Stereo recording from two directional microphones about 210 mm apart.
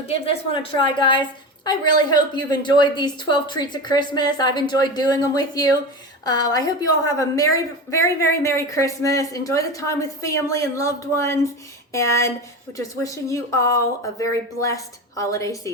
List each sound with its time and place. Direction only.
0.3 s a woman's voice: 25° left (ahead or behind)